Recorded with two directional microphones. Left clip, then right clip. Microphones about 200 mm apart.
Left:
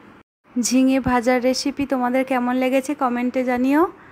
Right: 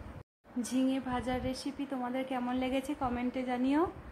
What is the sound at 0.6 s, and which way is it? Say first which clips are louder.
A woman's voice: left 15 dB; 35° left (ahead or behind).